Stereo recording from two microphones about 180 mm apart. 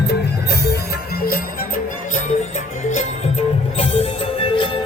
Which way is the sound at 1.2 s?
55° left (ahead or behind).